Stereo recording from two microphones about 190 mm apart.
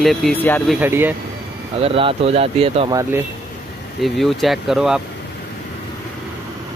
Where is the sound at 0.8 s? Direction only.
10° right (ahead or behind).